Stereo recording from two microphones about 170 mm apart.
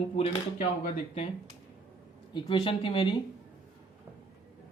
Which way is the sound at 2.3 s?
30° left (ahead or behind).